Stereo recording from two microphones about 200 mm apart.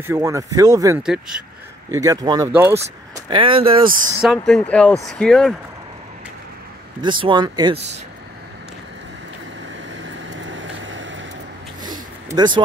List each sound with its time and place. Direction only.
0.0 s speech: 15° right (ahead or behind)
1.0 s speech: 5° right (ahead or behind)
1.9 s speech: 15° right (ahead or behind)
3.3 s speech: 25° right (ahead or behind)
4.2 s speech: centre (ahead or behind)
7.0 s speech: 25° right (ahead or behind)
10.0 s vehicle: 70° right (ahead or behind)
11.8 s a sound: 20° right (ahead or behind)